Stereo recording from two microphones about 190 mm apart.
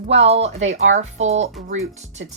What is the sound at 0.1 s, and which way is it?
Speech, 35° right (ahead or behind).